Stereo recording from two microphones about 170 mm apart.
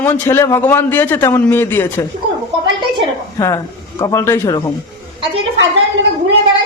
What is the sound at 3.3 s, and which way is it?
A man's voice, 15° left (ahead or behind).